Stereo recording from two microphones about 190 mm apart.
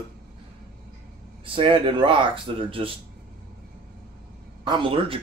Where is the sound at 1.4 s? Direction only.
25° right (ahead or behind).